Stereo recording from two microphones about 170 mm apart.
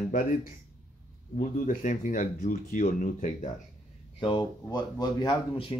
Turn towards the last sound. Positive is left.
turn(degrees=30)  # may be behind; listen again after turning